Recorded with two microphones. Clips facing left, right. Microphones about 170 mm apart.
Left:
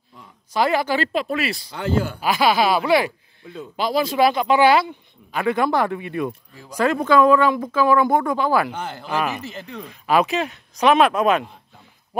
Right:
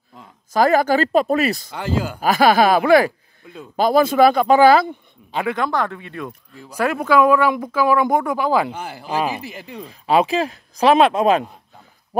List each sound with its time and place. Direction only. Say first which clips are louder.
0.5 s speech: right 4 dB; 45° right (ahead or behind)
5.5 s speech: left 3 dB; 10° left (ahead or behind); by 9.8 s 10° right (ahead or behind)
9.8 s speech: right 2 dB; 30° right (ahead or behind)